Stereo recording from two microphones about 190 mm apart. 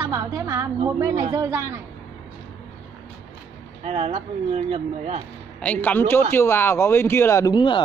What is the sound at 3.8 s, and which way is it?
Speech, 30° right (ahead or behind).